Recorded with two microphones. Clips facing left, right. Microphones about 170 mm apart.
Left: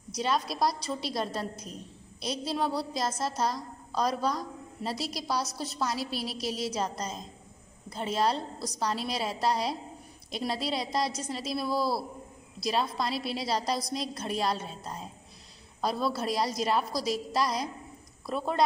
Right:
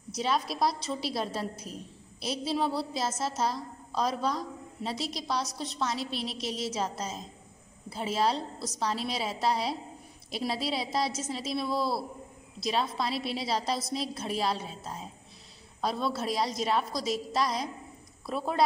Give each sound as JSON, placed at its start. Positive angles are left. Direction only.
{"t": 0.1, "sound": "a woman's voice", "side_deg": 0}